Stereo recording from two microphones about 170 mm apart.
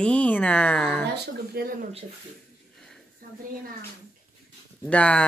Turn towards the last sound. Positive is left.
turn(degrees=5)  # may be behind; listen again after turning